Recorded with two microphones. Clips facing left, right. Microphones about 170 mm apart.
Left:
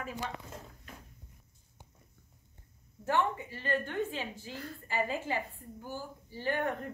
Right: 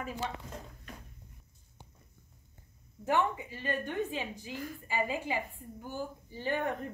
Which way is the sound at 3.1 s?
15° right (ahead or behind).